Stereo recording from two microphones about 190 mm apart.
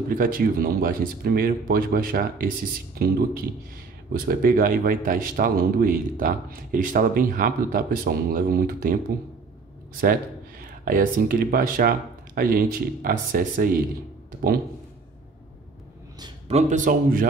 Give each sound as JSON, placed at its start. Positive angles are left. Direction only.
{"t": 0.1, "sound": "speech", "side_deg": -45}
{"t": 10.6, "sound": "speech", "side_deg": -45}
{"t": 16.4, "sound": "a man's voice", "side_deg": -35}